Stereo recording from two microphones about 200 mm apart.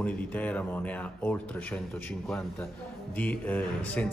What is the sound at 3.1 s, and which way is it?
Speech, 10° left (ahead or behind).